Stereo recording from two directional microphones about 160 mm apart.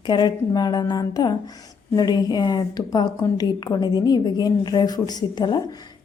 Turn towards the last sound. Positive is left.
turn(degrees=25)  # may be behind; listen again after turning